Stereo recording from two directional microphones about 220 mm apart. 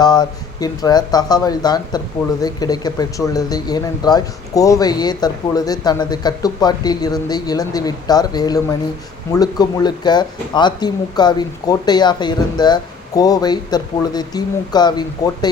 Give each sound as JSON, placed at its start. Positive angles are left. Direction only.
{"t": 0.0, "sound": "speech", "side_deg": 20}